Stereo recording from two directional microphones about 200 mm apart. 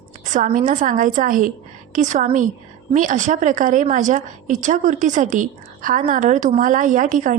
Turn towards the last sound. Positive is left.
turn(degrees=-40)  # may be behind; listen again after turning